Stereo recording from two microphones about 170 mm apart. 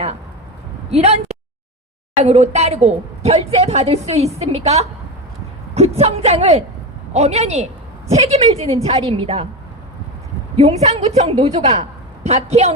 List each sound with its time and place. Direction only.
0.9 s a woman's voice: 35° right (ahead or behind)
10.6 s a woman's voice: 40° right (ahead or behind)